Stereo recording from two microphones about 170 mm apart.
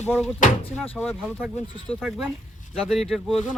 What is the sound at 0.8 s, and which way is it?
Speech, 5° left (ahead or behind).